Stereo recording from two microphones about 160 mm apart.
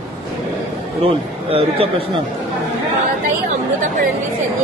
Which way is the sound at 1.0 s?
35° right (ahead or behind).